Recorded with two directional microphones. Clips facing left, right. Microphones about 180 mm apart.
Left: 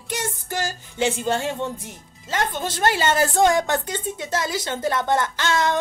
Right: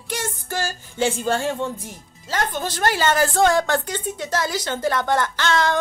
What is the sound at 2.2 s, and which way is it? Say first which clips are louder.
A woman's voice: even; 20° left (ahead or behind).